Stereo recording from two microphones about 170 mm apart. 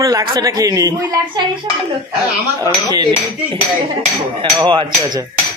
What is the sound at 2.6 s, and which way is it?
Speech, 25° right (ahead or behind).